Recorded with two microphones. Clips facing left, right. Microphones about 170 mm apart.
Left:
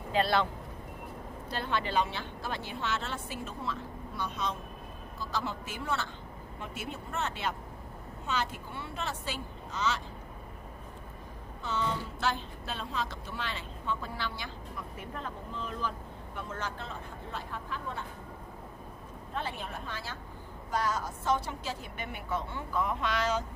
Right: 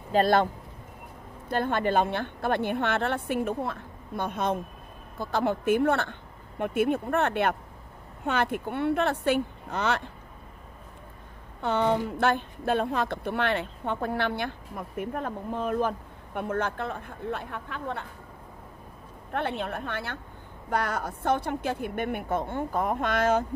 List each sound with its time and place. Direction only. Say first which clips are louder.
0.1 s speech: right 6 dB; 45° right (ahead or behind)
1.5 s speech: right 7 dB; 50° right (ahead or behind)
11.6 s speech: right 9 dB; 60° right (ahead or behind)
19.3 s speech: right 8 dB; 60° right (ahead or behind)